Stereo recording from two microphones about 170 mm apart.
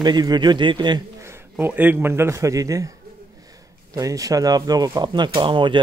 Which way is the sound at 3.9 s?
20° right (ahead or behind).